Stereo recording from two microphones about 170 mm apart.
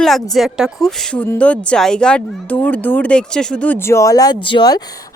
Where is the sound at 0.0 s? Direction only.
Centre (ahead or behind).